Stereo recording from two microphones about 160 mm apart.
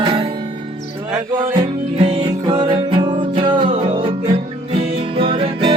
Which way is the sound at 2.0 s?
30° right (ahead or behind).